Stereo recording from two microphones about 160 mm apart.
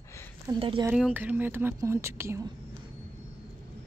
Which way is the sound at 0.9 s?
10° right (ahead or behind).